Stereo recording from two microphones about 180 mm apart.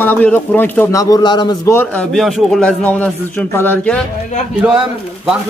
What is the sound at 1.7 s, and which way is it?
Speech, 5° left (ahead or behind).